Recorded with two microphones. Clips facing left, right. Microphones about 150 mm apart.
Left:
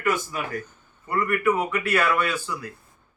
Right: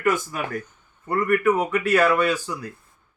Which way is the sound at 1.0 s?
45° right (ahead or behind).